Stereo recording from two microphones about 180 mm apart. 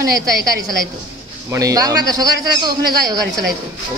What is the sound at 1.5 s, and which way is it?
A man's voice, 20° right (ahead or behind).